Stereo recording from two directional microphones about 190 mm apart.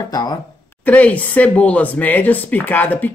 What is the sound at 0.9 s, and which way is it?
Speech, 10° left (ahead or behind).